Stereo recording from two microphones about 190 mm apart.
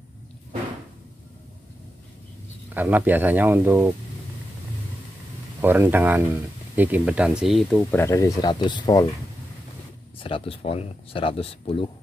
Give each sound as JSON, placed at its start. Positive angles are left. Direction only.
{"t": 2.7, "sound": "speech", "side_deg": -10}
{"t": 5.6, "sound": "speech", "side_deg": -10}
{"t": 7.9, "sound": "speech", "side_deg": 15}
{"t": 10.2, "sound": "speech", "side_deg": 30}